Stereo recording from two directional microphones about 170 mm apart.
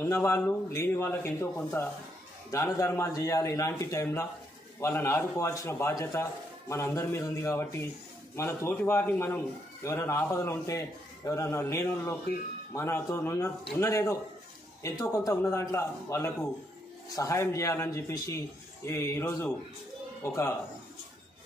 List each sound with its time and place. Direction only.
0.0 s a man's voice: 15° left (ahead or behind)